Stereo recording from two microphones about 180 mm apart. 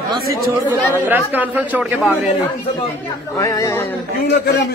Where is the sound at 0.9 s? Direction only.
10° right (ahead or behind).